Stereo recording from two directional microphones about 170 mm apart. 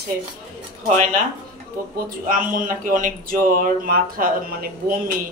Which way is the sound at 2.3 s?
55° right (ahead or behind).